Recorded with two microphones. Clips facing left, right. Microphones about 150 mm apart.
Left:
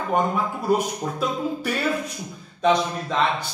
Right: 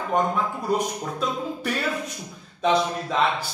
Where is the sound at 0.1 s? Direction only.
5° left (ahead or behind).